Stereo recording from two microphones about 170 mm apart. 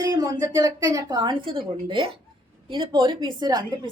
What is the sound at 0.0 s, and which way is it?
A woman's voice, 20° right (ahead or behind).